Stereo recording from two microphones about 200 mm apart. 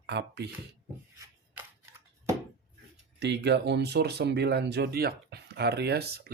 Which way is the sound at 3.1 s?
60° right (ahead or behind).